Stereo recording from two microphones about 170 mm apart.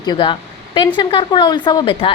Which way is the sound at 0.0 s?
25° left (ahead or behind).